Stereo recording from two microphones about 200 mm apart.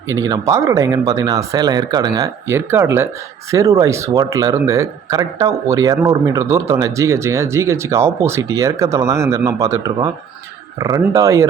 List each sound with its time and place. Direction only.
0.1 s speech: 15° right (ahead or behind)